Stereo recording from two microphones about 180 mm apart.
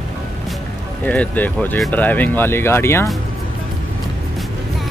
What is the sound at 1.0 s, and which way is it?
Speech, 10° left (ahead or behind).